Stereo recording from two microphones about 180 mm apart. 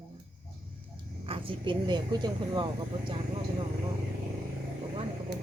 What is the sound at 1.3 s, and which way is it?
Speech, 30° right (ahead or behind).